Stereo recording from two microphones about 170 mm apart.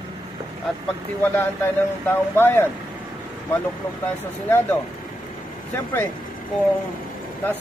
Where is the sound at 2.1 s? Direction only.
15° left (ahead or behind).